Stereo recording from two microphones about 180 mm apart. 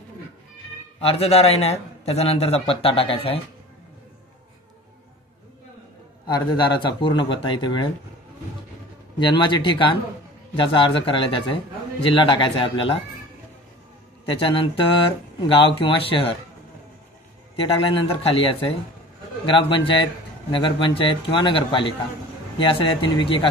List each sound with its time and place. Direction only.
1.0 s a man's voice: 35° left (ahead or behind)
6.3 s a man's voice: 25° left (ahead or behind)
9.2 s a man's voice: 25° left (ahead or behind)
14.2 s a man's voice: 30° left (ahead or behind)
17.6 s a man's voice: 30° left (ahead or behind)